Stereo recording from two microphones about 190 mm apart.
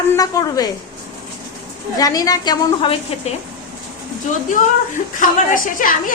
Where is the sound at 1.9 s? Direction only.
20° left (ahead or behind).